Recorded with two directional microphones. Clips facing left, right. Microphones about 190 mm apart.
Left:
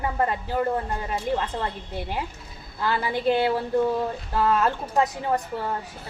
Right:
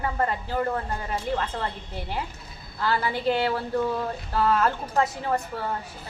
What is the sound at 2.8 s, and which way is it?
A woman's voice, 15° left (ahead or behind).